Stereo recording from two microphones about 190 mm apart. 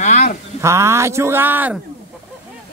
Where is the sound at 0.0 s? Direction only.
40° left (ahead or behind).